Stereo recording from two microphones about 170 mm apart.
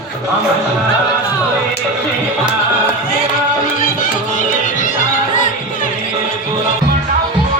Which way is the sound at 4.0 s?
50° left (ahead or behind).